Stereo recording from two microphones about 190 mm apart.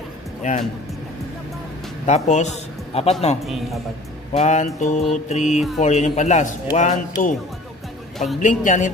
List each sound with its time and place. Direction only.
0.4 s speech: 40° left (ahead or behind)
2.0 s speech: 40° left (ahead or behind)
4.4 s a man's voice: 40° left (ahead or behind)
8.4 s a man's voice: 40° left (ahead or behind)